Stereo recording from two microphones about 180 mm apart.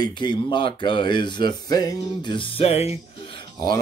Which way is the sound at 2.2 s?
30° left (ahead or behind).